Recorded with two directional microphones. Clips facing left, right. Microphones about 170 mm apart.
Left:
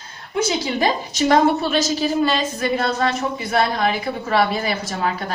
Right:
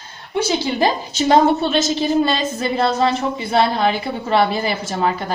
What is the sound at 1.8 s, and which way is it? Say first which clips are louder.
A woman's voice: right 2 dB; 25° right (ahead or behind).